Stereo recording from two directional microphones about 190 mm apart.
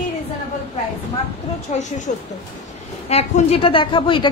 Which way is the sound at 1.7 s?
40° left (ahead or behind).